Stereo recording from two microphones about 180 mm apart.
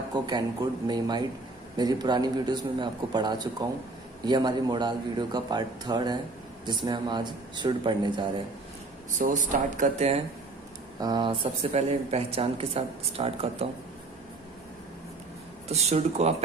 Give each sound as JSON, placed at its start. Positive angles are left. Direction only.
{"t": 0.1, "sound": "a man's voice", "side_deg": -25}
{"t": 9.2, "sound": "speech", "side_deg": -45}
{"t": 11.0, "sound": "speech", "side_deg": -25}
{"t": 15.7, "sound": "speech", "side_deg": -35}